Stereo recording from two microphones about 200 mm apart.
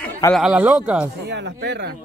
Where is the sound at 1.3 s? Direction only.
60° right (ahead or behind).